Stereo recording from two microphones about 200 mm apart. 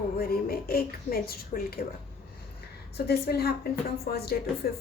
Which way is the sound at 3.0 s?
50° left (ahead or behind).